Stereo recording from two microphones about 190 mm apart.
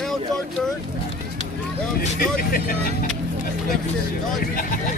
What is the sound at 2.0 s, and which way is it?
Speech, 50° left (ahead or behind).